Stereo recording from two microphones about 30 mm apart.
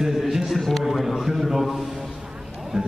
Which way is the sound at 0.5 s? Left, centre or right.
Centre.